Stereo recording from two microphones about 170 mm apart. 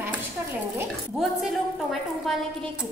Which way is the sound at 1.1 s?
Centre (ahead or behind).